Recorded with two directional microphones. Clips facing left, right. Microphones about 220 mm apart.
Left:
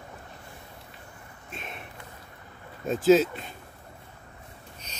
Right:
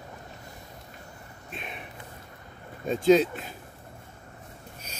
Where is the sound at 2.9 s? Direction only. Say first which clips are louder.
Even; 5° left (ahead or behind).